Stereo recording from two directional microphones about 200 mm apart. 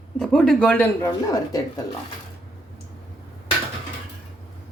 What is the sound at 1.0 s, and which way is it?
Speech, 20° left (ahead or behind).